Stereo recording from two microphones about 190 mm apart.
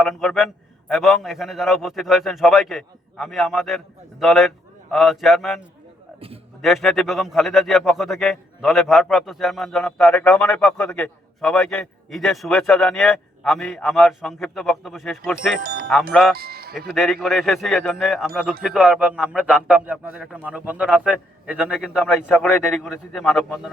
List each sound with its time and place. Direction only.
0.0 s a man's voice: centre (ahead or behind)
6.1 s a sound: 30° right (ahead or behind)
6.6 s a man's voice: centre (ahead or behind)
15.6 s speech: 50° right (ahead or behind)
15.9 s a man's voice: centre (ahead or behind)
16.4 s music: 55° right (ahead or behind)
16.7 s a man's voice: centre (ahead or behind)